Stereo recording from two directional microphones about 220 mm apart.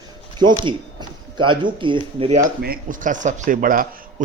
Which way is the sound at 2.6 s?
40° right (ahead or behind).